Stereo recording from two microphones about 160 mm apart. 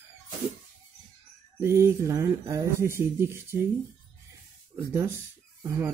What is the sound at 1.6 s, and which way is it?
Speech, 15° right (ahead or behind).